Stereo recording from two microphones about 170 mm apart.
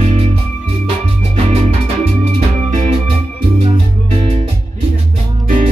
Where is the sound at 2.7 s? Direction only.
45° right (ahead or behind).